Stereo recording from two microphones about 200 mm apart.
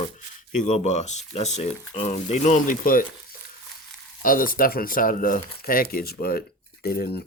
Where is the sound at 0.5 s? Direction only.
35° left (ahead or behind).